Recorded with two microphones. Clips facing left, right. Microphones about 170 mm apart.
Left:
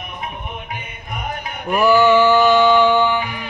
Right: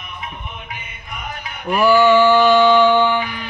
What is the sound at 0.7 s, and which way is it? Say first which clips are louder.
Music: left 4 dB; 50° left (ahead or behind).